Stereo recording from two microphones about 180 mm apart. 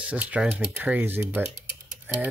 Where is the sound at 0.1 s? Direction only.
5° right (ahead or behind).